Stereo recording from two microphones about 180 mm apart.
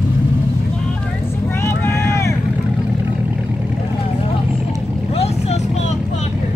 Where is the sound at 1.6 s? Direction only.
15° left (ahead or behind).